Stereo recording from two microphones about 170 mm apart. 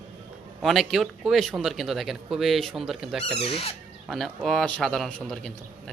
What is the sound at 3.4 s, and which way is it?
Speech, 35° left (ahead or behind).